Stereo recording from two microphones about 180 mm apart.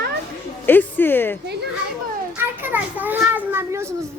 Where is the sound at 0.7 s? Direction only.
10° left (ahead or behind).